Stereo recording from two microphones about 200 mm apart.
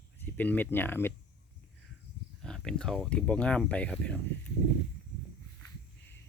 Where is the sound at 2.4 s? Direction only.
5° left (ahead or behind).